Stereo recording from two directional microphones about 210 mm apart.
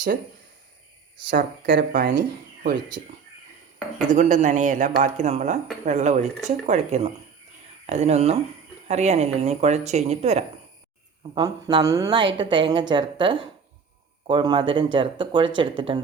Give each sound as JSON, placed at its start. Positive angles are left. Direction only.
{"t": 1.3, "sound": "speech", "side_deg": -50}
{"t": 4.1, "sound": "speech", "side_deg": -35}
{"t": 11.3, "sound": "a woman's voice", "side_deg": -20}